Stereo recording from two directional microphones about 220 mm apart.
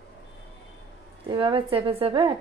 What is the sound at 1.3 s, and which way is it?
A woman's voice, 25° right (ahead or behind).